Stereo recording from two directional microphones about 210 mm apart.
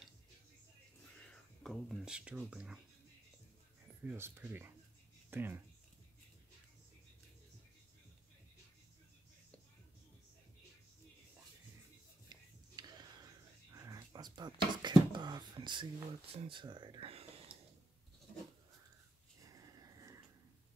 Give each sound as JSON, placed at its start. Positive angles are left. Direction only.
{"t": 1.0, "sound": "speech", "side_deg": 5}
{"t": 4.0, "sound": "speech", "side_deg": -10}
{"t": 12.3, "sound": "whispering", "side_deg": -20}
{"t": 19.4, "sound": "a sound", "side_deg": -15}